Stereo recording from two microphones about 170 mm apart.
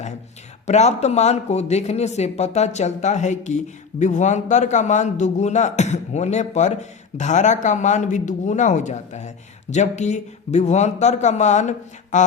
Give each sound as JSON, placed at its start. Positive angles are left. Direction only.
{"t": 0.7, "sound": "speech", "side_deg": 40}